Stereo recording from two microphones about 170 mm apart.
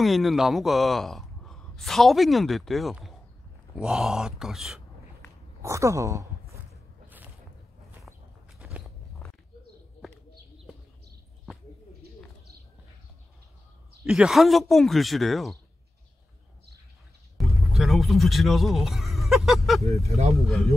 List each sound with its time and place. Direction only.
0.0 s a man's voice: centre (ahead or behind)
5.6 s speech: 15° right (ahead or behind)
8.1 s a sound: 10° right (ahead or behind)
8.5 s walk: centre (ahead or behind)
14.0 s a man's voice: centre (ahead or behind)
17.4 s a sound: centre (ahead or behind)
17.7 s a man's voice: centre (ahead or behind)